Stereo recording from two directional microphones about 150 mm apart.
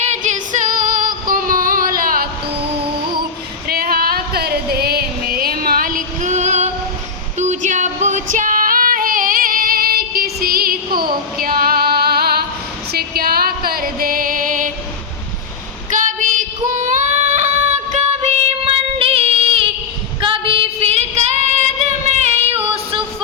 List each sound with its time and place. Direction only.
0.0 s female singing: 50° right (ahead or behind); by 2.3 s 75° right (ahead or behind)
3.7 s a sound: 90° right; by 6.7 s 50° right (ahead or behind)
7.3 s female singing: 55° right (ahead or behind); by 12.5 s 90° right
12.9 s music: 90° right; by 14.7 s 65° right (ahead or behind)
15.9 s child singing: 60° right (ahead or behind); by 19.7 s 40° right (ahead or behind)
20.2 s a sound: 35° right (ahead or behind)
21.5 s child singing: 50° right (ahead or behind)
22.7 s female singing: 40° right (ahead or behind)